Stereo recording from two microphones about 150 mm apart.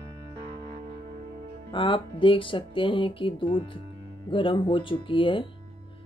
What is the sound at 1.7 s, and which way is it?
Speech, 35° left (ahead or behind).